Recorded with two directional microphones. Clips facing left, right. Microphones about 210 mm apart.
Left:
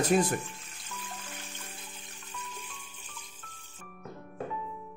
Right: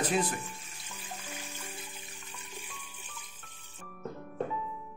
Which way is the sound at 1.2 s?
10° right (ahead or behind).